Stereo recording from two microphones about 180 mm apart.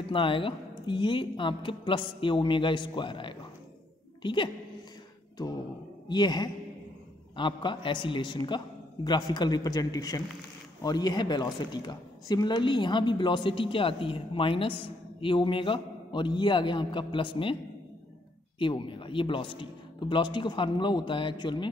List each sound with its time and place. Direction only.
0.1 s a woman's voice: 30° left (ahead or behind)
6.0 s speech: 25° left (ahead or behind)
18.6 s speech: 25° left (ahead or behind)